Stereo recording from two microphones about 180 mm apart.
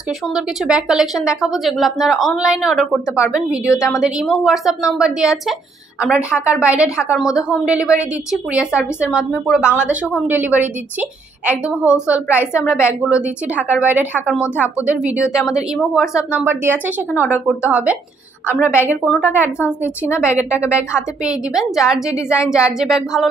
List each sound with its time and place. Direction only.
0.3 s a woman's voice: 5° right (ahead or behind)
3.6 s a woman's voice: 15° left (ahead or behind)
4.0 s a woman's voice: centre (ahead or behind)